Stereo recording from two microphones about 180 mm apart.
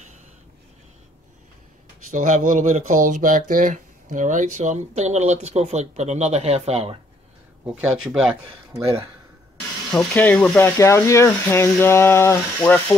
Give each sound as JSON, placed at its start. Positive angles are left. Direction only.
{"t": 2.0, "sound": "speech", "side_deg": -45}
{"t": 7.6, "sound": "speech", "side_deg": -5}
{"t": 9.8, "sound": "speech", "side_deg": 5}